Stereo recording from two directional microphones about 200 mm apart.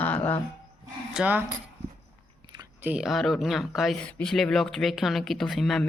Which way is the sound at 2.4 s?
20° right (ahead or behind).